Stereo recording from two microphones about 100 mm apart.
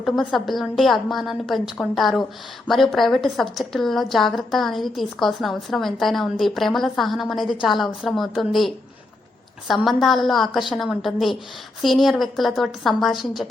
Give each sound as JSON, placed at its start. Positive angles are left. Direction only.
{"t": 0.0, "sound": "a woman's voice", "side_deg": 0}